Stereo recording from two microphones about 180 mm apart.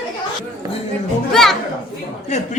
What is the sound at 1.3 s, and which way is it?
Speech, centre (ahead or behind).